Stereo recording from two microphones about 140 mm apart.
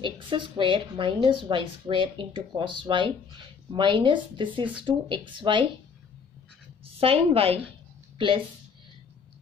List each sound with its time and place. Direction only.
0.0 s a woman's voice: 35° right (ahead or behind)
7.0 s a woman's voice: 40° right (ahead or behind)